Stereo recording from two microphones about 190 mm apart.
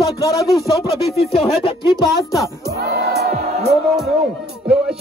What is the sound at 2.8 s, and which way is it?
Crowd, 60° right (ahead or behind).